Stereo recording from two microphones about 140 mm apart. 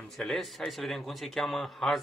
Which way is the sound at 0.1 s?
Centre (ahead or behind).